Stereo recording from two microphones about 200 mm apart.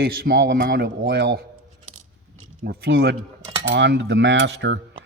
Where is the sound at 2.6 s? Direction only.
50° right (ahead or behind).